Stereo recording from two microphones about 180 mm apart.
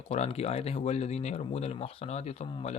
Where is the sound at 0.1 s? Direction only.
35° left (ahead or behind).